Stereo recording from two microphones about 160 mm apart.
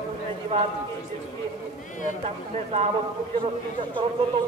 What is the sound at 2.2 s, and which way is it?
Speech, 40° right (ahead or behind).